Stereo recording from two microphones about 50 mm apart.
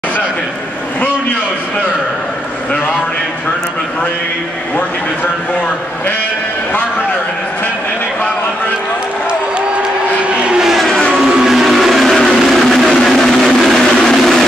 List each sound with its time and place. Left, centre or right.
10.8 s vehicle: centre
11.1 s vehicle: centre